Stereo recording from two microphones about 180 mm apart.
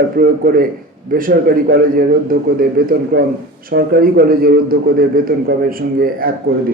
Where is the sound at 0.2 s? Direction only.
55° right (ahead or behind).